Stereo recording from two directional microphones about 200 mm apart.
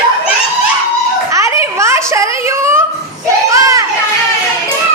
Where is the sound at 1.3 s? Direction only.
15° right (ahead or behind).